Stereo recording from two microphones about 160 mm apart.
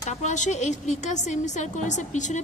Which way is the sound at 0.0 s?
50° left (ahead or behind).